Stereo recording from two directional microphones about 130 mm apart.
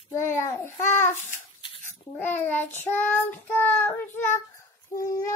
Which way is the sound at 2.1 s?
15° left (ahead or behind).